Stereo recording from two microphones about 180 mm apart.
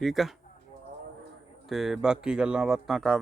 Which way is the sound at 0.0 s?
Centre (ahead or behind).